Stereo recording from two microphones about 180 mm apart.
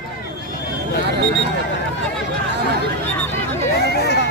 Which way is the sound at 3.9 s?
65° left (ahead or behind).